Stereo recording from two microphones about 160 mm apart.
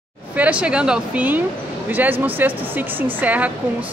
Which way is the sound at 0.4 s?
10° right (ahead or behind).